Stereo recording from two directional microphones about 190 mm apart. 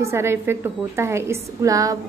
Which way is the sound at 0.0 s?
15° right (ahead or behind).